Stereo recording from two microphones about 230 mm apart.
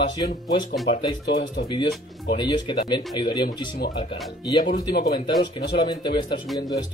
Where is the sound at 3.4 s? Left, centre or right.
Left.